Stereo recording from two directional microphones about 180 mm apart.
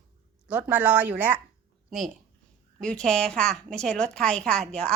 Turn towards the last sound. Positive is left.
turn(degrees=5)  # may be behind; listen again after turning